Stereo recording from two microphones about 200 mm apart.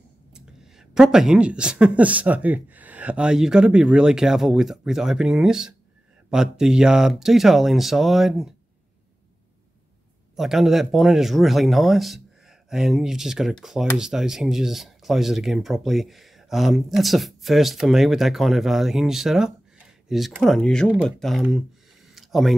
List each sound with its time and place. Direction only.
0.3 s speech: 5° right (ahead or behind)
10.3 s speech: centre (ahead or behind)
22.1 s a sound: centre (ahead or behind)